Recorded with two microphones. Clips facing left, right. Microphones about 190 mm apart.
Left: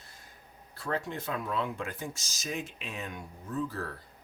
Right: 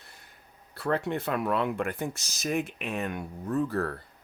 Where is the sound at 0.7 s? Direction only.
65° right (ahead or behind).